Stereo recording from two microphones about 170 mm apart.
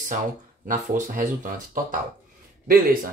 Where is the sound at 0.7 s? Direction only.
50° right (ahead or behind).